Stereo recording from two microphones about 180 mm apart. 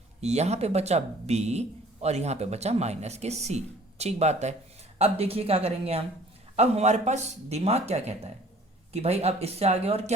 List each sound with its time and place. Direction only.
0.2 s speech: 40° right (ahead or behind)